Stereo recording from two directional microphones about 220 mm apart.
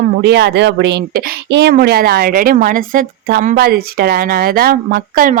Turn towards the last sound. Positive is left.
turn(degrees=-40)  # may be behind; listen again after turning